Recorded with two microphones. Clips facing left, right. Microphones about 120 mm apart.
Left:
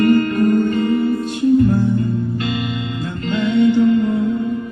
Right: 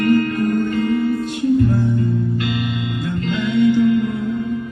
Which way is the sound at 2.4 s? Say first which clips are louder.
Even; 30° left (ahead or behind).